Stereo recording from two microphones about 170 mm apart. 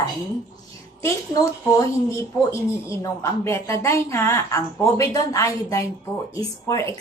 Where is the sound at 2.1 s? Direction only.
15° left (ahead or behind).